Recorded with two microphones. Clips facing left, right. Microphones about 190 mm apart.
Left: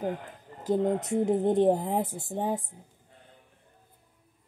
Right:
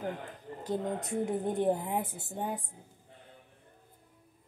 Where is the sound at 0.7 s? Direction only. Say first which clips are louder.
Left 8 dB; 20° left (ahead or behind).